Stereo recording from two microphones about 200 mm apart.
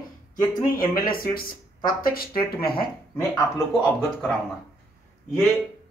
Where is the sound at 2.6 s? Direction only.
25° left (ahead or behind).